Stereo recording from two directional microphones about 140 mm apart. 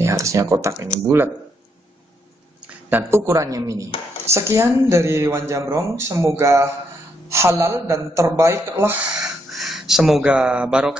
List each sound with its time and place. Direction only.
0.0 s speech: 20° right (ahead or behind)
2.6 s speech: 15° right (ahead or behind)